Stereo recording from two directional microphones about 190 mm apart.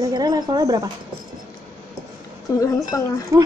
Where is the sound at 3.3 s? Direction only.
15° right (ahead or behind).